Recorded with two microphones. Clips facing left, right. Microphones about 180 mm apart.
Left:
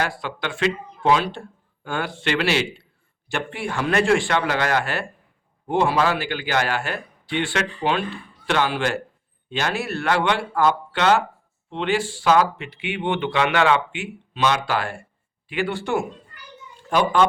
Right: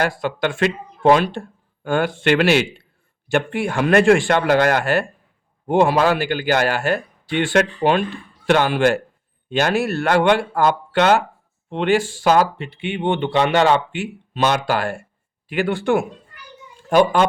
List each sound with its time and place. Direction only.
0.0 s speech: 45° right (ahead or behind)